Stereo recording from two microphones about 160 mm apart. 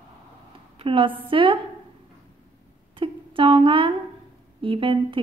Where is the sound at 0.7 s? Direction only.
30° right (ahead or behind).